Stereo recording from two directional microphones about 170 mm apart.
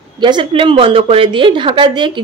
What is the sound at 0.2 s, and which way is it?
A woman's voice, 30° right (ahead or behind).